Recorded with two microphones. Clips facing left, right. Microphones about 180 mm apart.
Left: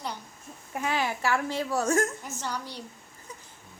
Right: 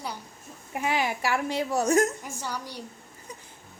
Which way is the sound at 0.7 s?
15° right (ahead or behind).